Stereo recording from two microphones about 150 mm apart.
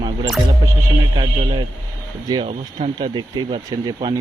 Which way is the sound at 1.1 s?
35° right (ahead or behind).